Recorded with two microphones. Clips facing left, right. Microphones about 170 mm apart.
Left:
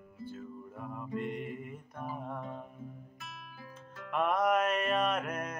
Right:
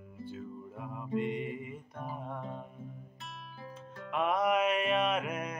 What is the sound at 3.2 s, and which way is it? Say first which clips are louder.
Music: right 2 dB; 30° right (ahead or behind).